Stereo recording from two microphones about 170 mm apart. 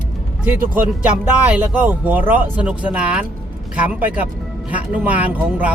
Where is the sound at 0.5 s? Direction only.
55° right (ahead or behind).